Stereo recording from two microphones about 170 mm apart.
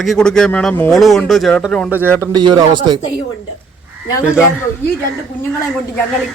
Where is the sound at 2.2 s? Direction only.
25° right (ahead or behind).